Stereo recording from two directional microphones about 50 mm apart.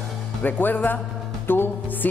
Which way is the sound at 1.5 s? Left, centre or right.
Left.